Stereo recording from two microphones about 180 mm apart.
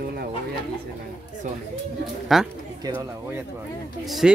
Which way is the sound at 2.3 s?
Centre (ahead or behind).